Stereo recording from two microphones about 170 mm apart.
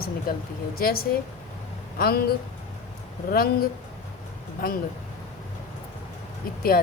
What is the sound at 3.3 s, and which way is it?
Speech, 60° left (ahead or behind).